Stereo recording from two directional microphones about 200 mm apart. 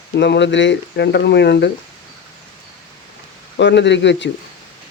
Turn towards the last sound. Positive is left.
turn(degrees=60)  # may be behind; listen again after turning